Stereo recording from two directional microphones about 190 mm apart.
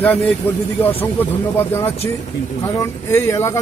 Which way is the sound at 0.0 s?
10° left (ahead or behind).